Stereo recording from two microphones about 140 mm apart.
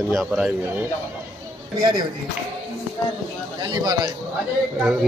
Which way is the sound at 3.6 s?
30° right (ahead or behind).